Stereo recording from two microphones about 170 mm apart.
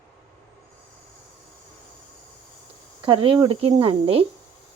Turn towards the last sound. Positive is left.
turn(degrees=-35)  # may be behind; listen again after turning